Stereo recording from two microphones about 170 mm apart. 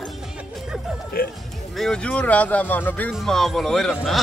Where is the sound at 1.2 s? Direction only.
60° left (ahead or behind).